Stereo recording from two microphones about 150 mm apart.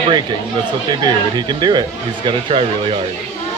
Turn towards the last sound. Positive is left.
turn(degrees=-35)  # may be behind; listen again after turning